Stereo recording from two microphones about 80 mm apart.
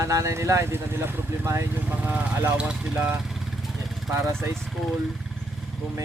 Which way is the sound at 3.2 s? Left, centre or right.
Centre.